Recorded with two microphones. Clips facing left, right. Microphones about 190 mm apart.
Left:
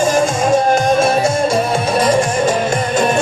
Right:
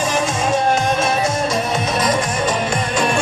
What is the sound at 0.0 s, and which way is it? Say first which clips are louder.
Music: left 6 dB; 50° left (ahead or behind).